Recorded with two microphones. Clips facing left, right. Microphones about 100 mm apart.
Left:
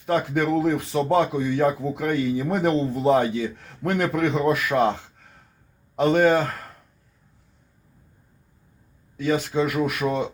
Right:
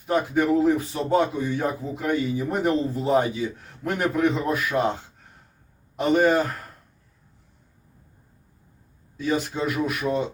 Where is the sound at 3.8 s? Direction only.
75° left (ahead or behind).